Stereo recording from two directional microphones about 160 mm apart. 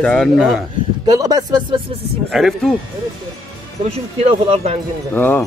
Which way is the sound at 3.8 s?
40° right (ahead or behind).